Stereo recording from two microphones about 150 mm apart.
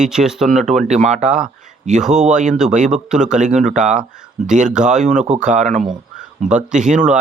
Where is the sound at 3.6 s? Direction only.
50° right (ahead or behind).